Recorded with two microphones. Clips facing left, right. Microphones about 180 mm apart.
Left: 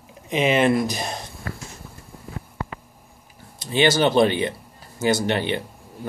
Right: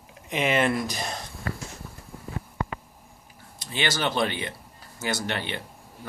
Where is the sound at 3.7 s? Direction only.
25° left (ahead or behind).